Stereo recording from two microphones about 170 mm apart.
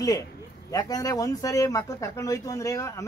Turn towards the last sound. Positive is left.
turn(degrees=20)  # may be behind; listen again after turning